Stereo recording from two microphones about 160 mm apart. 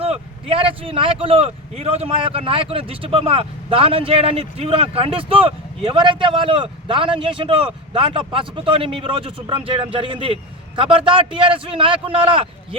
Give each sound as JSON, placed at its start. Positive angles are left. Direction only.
{"t": 0.0, "sound": "speech", "side_deg": -35}